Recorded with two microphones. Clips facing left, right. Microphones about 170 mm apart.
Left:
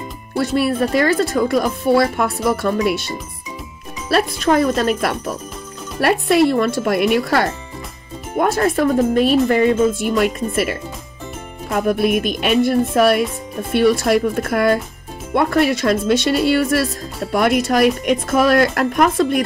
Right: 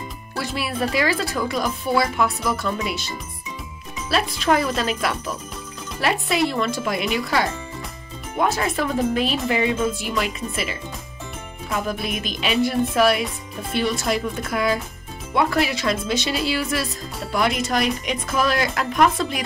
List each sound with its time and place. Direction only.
0.4 s speech: 45° left (ahead or behind)
4.1 s speech: 50° left (ahead or behind)